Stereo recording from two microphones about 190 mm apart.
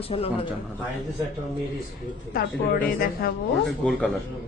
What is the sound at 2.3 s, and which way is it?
Speech, 50° left (ahead or behind).